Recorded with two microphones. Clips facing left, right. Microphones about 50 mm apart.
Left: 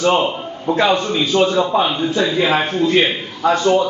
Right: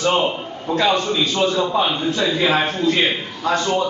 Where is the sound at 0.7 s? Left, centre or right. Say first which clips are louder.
Left 1 dB; left.